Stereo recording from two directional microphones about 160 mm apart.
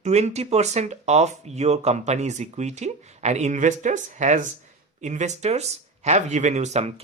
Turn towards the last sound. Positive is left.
turn(degrees=-40)  # may be behind; listen again after turning